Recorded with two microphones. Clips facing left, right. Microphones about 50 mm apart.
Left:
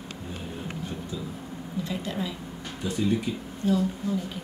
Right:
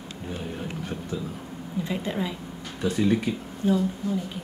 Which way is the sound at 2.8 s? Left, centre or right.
Right.